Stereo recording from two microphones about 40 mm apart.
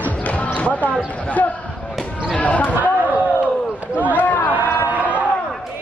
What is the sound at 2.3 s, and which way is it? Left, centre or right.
Speech, left.